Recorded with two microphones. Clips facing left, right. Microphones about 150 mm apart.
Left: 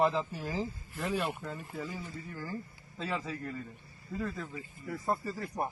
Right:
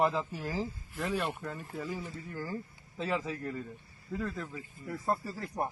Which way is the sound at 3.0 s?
20° right (ahead or behind).